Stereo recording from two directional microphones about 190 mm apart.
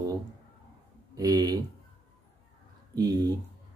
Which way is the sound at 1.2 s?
20° right (ahead or behind).